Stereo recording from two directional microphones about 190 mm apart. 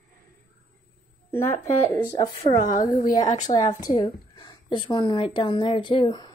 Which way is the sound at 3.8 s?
25° left (ahead or behind).